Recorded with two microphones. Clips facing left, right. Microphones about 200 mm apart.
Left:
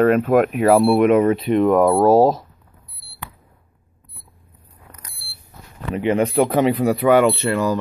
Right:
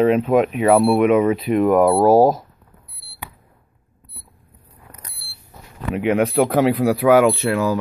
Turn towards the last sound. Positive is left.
turn(degrees=-5)  # may be behind; listen again after turning